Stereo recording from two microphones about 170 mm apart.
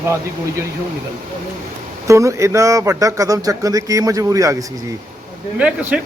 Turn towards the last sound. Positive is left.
turn(degrees=-10)  # may be behind; listen again after turning